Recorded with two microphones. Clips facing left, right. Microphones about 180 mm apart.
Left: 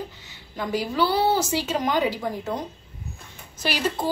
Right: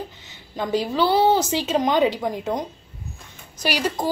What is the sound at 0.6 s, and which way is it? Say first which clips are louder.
A woman's voice: right 3 dB; 25° right (ahead or behind).